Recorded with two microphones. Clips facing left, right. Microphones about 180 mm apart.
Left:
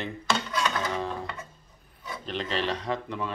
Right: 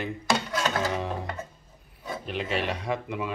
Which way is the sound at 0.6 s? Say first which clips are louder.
Right 2 dB; 30° right (ahead or behind).